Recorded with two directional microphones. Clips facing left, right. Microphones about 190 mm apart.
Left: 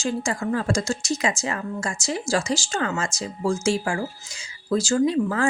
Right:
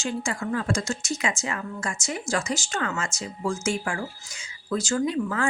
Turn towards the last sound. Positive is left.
turn(degrees=35)  # may be behind; listen again after turning